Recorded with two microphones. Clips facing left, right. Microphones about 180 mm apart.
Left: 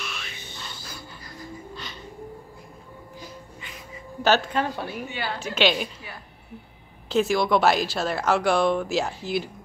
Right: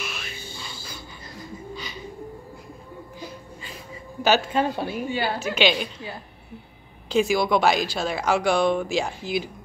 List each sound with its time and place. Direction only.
1.8 s bird: centre (ahead or behind)
4.2 s speech: 5° right (ahead or behind)
4.7 s a woman's voice: 25° right (ahead or behind)
5.4 s speech: centre (ahead or behind)
7.1 s speech: centre (ahead or behind)